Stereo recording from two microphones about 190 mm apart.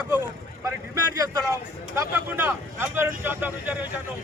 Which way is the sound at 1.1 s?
20° right (ahead or behind).